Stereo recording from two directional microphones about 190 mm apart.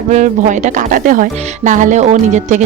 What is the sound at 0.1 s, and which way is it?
Speech, 40° right (ahead or behind).